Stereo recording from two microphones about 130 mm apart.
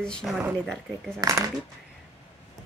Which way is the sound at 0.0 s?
5° left (ahead or behind).